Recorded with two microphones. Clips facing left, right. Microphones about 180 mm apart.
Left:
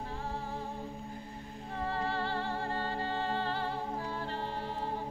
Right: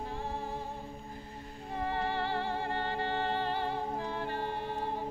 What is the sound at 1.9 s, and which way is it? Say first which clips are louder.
Music: right 1 dB; 20° right (ahead or behind).